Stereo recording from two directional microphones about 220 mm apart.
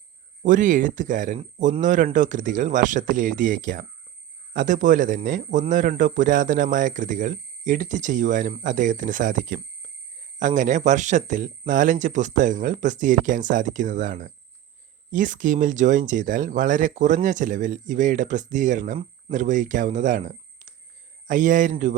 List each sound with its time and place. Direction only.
0.4 s speech: 35° right (ahead or behind)